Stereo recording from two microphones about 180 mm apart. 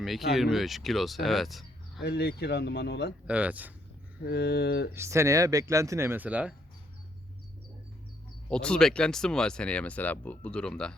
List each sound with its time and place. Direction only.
0.0 s speech: centre (ahead or behind)
2.0 s speech: 65° left (ahead or behind)
3.2 s speech: 10° right (ahead or behind)
4.2 s speech: 65° left (ahead or behind)
4.9 s speech: 15° right (ahead or behind)
8.4 s speech: 5° left (ahead or behind)